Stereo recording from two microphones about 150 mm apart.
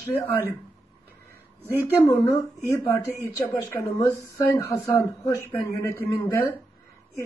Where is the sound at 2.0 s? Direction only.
20° left (ahead or behind).